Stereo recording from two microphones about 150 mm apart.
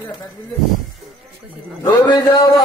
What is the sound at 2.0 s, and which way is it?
Speech, 25° left (ahead or behind).